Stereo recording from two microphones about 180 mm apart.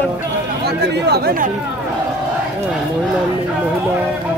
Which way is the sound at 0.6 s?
70° right (ahead or behind).